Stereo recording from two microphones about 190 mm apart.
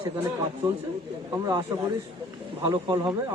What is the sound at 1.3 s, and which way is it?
A man's voice, 20° right (ahead or behind).